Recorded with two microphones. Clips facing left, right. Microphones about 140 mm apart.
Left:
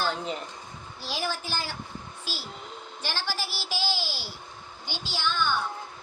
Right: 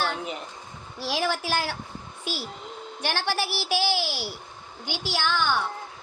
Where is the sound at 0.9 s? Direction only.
75° right (ahead or behind).